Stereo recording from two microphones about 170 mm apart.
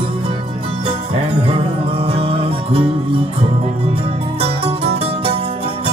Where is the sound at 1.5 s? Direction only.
35° right (ahead or behind).